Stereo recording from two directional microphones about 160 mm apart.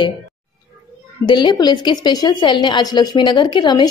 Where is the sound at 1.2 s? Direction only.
30° left (ahead or behind).